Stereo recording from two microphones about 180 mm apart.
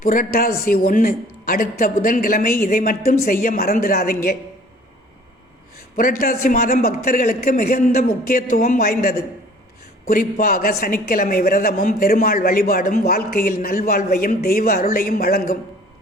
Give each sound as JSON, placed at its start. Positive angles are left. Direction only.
{"t": 0.0, "sound": "a man's voice", "side_deg": 50}
{"t": 6.0, "sound": "a man's voice", "side_deg": 50}